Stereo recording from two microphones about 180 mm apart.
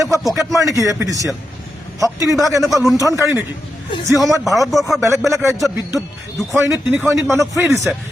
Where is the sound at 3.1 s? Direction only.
15° right (ahead or behind).